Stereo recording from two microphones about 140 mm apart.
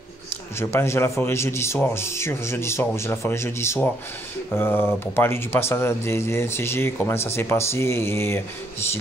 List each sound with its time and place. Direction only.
0.6 s speech: 20° left (ahead or behind)